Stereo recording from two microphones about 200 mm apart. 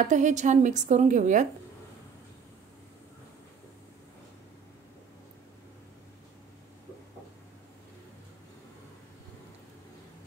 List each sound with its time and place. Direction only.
0.0 s a woman's voice: 35° right (ahead or behind)